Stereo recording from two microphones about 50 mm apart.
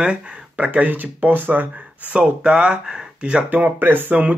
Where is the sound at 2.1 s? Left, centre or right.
Right.